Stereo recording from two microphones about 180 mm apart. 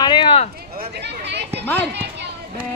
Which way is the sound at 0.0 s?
25° left (ahead or behind).